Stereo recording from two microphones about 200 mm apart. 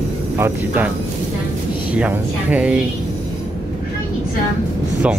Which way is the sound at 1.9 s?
5° right (ahead or behind).